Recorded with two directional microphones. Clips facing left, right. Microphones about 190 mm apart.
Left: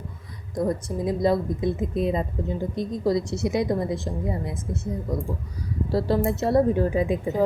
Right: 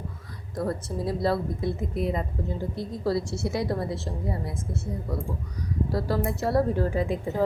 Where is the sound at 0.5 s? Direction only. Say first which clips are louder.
Left 4 dB; 15° left (ahead or behind).